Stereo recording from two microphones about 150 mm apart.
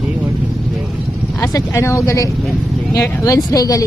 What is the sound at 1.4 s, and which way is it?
A woman's voice, 20° left (ahead or behind).